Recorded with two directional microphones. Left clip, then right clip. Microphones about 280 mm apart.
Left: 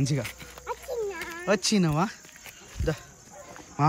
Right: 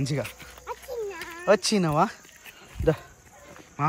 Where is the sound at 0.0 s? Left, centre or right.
Centre.